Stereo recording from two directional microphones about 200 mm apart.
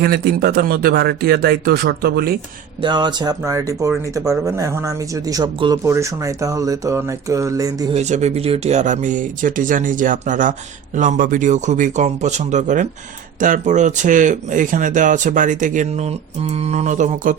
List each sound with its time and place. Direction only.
0.0 s speech: 50° right (ahead or behind)
2.8 s speech: 20° right (ahead or behind)
7.9 s speech: 35° right (ahead or behind)